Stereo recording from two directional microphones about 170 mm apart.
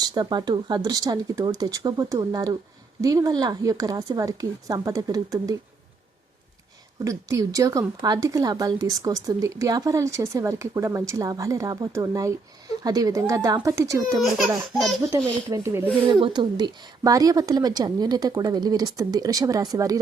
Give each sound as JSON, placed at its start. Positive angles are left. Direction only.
{"t": 0.0, "sound": "speech", "side_deg": -25}
{"t": 7.0, "sound": "speech", "side_deg": -20}
{"t": 16.2, "sound": "speech", "side_deg": -25}